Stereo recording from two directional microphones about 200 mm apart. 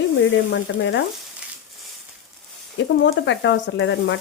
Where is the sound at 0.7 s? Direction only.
60° left (ahead or behind).